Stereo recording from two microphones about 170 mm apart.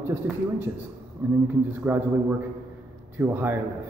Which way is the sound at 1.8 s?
10° right (ahead or behind).